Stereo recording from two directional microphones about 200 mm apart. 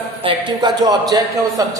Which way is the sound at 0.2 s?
25° right (ahead or behind).